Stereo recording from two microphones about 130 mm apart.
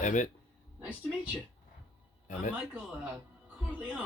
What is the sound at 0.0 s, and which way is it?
Speech, 75° left (ahead or behind).